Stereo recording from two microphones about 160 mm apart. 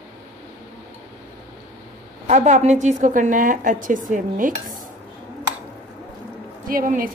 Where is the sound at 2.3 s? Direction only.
50° right (ahead or behind).